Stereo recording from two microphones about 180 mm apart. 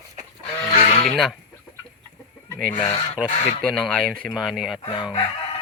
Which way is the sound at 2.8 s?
30° left (ahead or behind).